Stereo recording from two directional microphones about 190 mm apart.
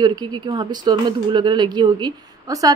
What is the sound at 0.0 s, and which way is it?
Speech, 20° right (ahead or behind).